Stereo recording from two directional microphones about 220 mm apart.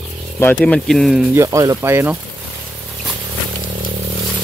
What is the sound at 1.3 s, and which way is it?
Speech, 15° right (ahead or behind).